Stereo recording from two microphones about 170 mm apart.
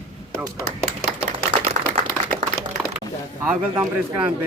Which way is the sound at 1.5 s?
40° right (ahead or behind).